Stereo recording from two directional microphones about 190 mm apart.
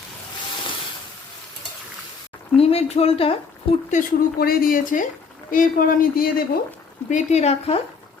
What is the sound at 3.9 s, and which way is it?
Speech, 45° left (ahead or behind).